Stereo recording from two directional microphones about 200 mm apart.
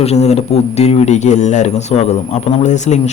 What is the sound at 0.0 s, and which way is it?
A man's voice, 35° left (ahead or behind).